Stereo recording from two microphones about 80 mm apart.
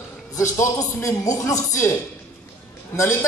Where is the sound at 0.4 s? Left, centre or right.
Left.